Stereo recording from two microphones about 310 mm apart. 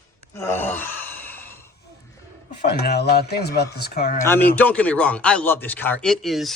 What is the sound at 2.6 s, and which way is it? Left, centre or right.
Speech, left.